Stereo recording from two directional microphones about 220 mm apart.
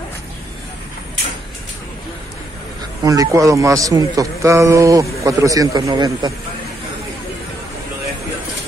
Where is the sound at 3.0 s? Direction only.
15° right (ahead or behind).